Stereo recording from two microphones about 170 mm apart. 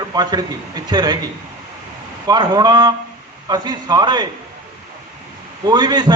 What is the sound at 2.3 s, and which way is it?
A man's voice, 25° right (ahead or behind).